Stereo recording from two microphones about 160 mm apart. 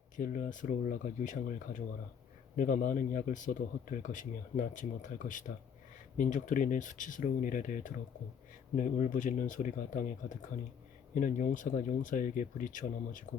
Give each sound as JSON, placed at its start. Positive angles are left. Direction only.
{"t": 0.2, "sound": "speech", "side_deg": 55}